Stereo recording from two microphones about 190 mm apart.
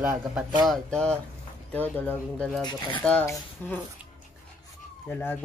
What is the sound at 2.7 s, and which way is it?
Speech, 25° left (ahead or behind).